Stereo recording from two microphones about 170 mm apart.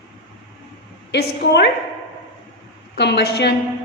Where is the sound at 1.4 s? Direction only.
80° left.